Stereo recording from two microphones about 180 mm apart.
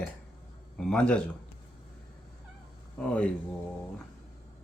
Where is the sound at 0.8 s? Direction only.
5° left (ahead or behind).